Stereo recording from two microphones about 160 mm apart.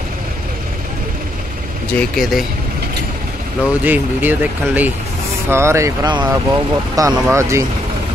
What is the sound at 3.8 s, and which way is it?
Speech, 10° right (ahead or behind).